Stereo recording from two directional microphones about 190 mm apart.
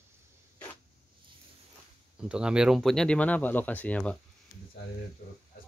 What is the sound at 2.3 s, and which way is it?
Speech, 5° right (ahead or behind).